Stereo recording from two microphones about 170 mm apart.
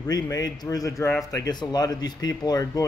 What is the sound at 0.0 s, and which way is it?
Speech, 20° left (ahead or behind).